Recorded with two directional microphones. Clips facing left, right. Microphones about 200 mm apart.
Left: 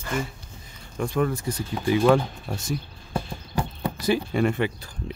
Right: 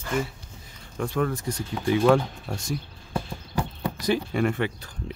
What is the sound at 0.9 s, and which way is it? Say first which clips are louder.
Speech: left 2 dB; 10° left (ahead or behind).